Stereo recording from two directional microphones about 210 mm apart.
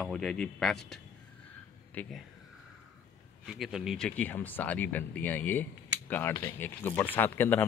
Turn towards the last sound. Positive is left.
turn(degrees=10)  # may be behind; listen again after turning